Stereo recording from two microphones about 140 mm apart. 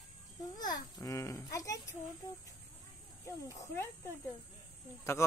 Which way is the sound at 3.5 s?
20° left (ahead or behind).